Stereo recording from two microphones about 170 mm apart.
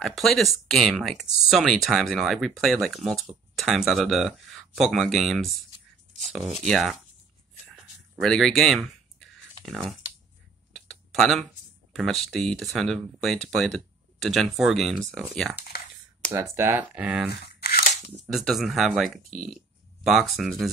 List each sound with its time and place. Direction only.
0.0 s speech: centre (ahead or behind)
7.7 s a sound: centre (ahead or behind)
11.9 s speech: centre (ahead or behind)
15.7 s computer keyboard: 70° left (ahead or behind)
16.5 s speech: 15° right (ahead or behind)
17.6 s a sound: 65° left (ahead or behind)
18.1 s speech: centre (ahead or behind)